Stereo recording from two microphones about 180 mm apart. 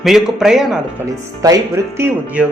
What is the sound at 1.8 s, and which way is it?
Speech, 15° right (ahead or behind).